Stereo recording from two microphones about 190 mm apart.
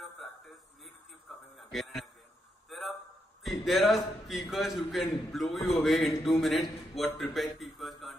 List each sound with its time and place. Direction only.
1.6 s a man's voice: centre (ahead or behind)
2.7 s a sound: centre (ahead or behind)
3.4 s a man's voice: centre (ahead or behind)